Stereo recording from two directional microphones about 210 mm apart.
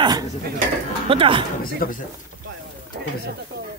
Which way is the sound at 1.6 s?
45° left (ahead or behind).